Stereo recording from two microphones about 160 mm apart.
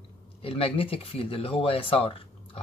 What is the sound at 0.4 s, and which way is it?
Speech, 35° left (ahead or behind).